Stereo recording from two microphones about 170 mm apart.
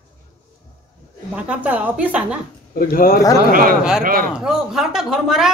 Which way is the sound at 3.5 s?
55° right (ahead or behind).